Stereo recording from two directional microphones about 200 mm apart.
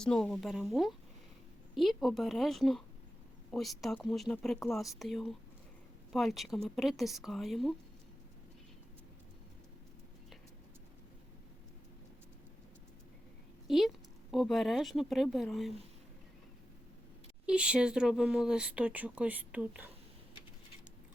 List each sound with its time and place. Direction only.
0.0 s speech: 5° left (ahead or behind)
13.7 s speech: centre (ahead or behind)
17.4 s speech: 5° right (ahead or behind)